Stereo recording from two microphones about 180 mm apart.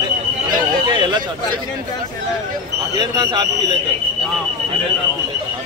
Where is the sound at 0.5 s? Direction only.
25° right (ahead or behind).